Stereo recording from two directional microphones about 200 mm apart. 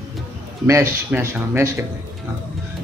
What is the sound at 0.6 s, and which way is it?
Speech, 15° right (ahead or behind).